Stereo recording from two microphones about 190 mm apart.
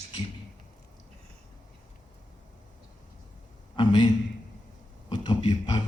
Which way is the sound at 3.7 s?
25° left (ahead or behind).